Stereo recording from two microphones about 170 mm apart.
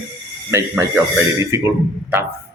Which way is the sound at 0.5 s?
15° right (ahead or behind).